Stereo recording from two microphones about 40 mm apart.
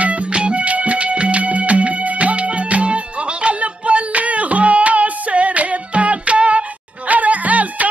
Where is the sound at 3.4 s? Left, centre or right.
Right.